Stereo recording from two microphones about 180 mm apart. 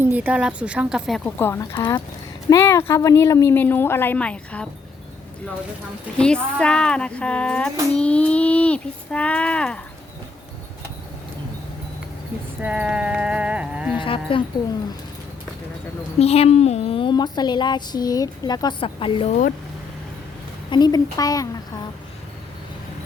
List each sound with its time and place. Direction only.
0.0 s a woman's voice: 10° right (ahead or behind)
1.4 s speech: 15° left (ahead or behind)
6.1 s speech: 5° left (ahead or behind)
12.6 s horse: 5° right (ahead or behind)
14.0 s speech: 30° left (ahead or behind)
16.1 s a woman's voice: 35° left (ahead or behind)
20.7 s a woman's voice: 25° left (ahead or behind)